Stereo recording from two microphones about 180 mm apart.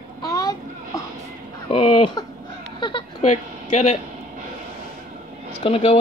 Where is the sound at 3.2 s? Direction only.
40° left (ahead or behind).